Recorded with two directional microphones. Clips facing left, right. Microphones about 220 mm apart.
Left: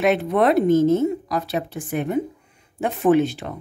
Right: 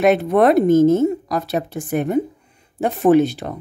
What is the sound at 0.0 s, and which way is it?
A woman's voice, 45° right (ahead or behind).